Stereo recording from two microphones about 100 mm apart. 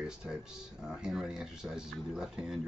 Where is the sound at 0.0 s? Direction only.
5° right (ahead or behind).